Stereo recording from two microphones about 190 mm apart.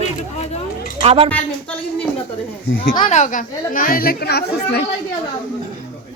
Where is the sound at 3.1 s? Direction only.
40° left (ahead or behind); by 4.8 s 55° left (ahead or behind).